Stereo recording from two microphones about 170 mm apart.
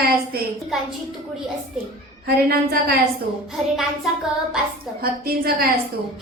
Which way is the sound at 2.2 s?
65° right (ahead or behind).